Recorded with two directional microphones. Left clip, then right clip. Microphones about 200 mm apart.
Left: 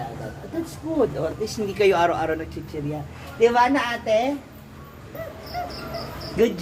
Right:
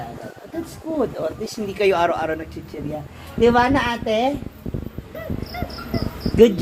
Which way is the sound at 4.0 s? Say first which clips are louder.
Even; 35° right (ahead or behind).